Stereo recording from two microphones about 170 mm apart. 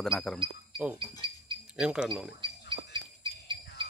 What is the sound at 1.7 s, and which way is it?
Speech, 5° right (ahead or behind).